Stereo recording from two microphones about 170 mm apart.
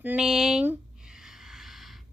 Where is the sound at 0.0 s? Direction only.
5° right (ahead or behind).